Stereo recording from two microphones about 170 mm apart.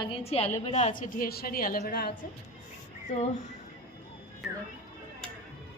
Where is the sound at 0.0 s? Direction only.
35° left (ahead or behind).